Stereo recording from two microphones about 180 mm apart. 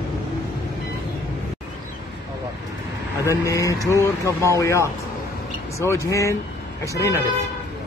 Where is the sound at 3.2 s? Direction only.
15° left (ahead or behind).